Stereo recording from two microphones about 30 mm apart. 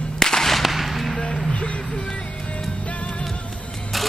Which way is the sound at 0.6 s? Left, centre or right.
Centre.